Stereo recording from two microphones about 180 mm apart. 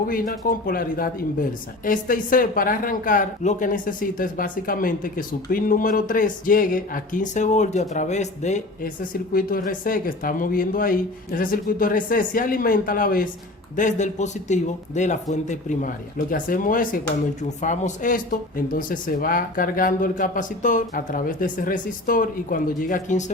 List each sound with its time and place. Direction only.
0.1 s speech: 50° left (ahead or behind)
9.3 s speech: 50° left (ahead or behind)